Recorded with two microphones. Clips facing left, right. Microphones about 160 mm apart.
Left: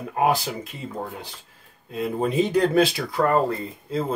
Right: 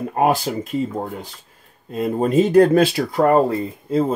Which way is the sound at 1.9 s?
50° right (ahead or behind).